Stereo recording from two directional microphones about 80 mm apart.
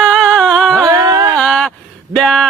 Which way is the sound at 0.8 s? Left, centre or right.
Right.